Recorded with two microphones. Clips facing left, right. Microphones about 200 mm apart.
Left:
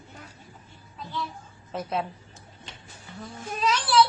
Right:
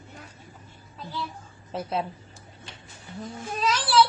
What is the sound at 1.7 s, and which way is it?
Speech, 30° right (ahead or behind).